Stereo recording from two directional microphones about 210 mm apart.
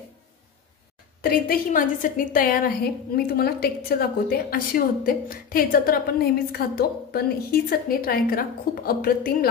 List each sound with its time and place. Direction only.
1.2 s a woman's voice: 40° left (ahead or behind)